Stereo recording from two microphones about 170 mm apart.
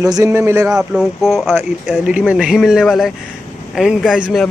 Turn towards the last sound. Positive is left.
turn(degrees=0)  # may be behind; listen again after turning